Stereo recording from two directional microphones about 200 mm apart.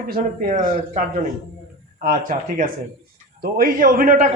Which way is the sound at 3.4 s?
45° right (ahead or behind).